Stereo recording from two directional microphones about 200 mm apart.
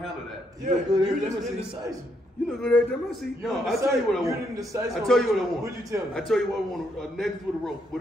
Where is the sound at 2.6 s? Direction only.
Centre (ahead or behind).